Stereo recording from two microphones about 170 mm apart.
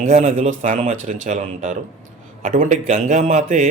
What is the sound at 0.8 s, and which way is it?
Speech, 35° right (ahead or behind).